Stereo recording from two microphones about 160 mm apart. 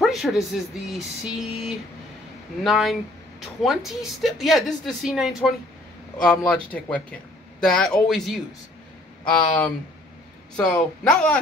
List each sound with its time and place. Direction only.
0.0 s speech: centre (ahead or behind)
6.2 s speech: 10° left (ahead or behind)